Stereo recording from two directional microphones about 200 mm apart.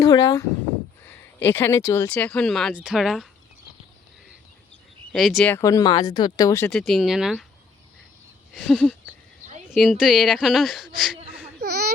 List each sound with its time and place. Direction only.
0.0 s speech: 15° left (ahead or behind); by 3.2 s centre (ahead or behind)
5.1 s speech: centre (ahead or behind)
5.5 s speech: 15° left (ahead or behind)
6.7 s speech: centre (ahead or behind)
8.5 s a sound: 5° left (ahead or behind)
9.6 s speech: centre (ahead or behind)
11.6 s a sound: 50° right (ahead or behind)